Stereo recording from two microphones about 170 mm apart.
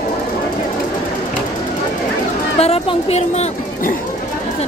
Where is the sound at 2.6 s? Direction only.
35° left (ahead or behind).